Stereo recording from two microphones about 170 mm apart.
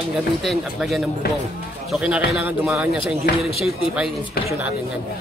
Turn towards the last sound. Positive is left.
turn(degrees=-5)  # may be behind; listen again after turning